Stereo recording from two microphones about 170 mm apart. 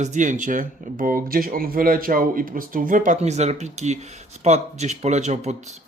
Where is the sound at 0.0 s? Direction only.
45° right (ahead or behind).